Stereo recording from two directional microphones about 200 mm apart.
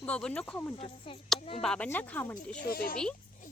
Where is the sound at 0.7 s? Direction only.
25° left (ahead or behind).